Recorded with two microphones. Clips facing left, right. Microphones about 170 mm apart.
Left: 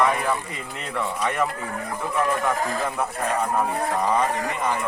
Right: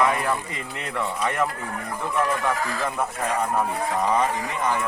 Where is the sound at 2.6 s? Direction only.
50° left (ahead or behind).